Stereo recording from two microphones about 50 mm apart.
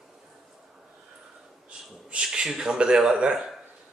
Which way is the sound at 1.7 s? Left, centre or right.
Centre.